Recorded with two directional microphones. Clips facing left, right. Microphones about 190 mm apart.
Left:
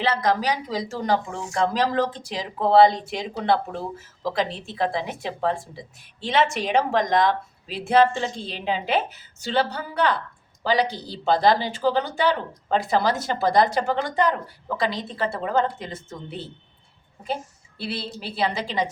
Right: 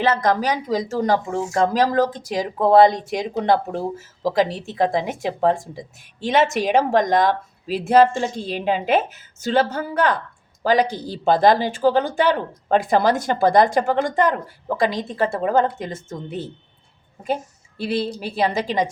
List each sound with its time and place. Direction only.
0.0 s a woman's voice: 45° right (ahead or behind)
17.7 s a woman's voice: 45° right (ahead or behind)